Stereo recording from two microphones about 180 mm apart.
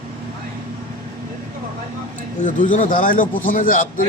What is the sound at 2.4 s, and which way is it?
A man's voice, 45° left (ahead or behind).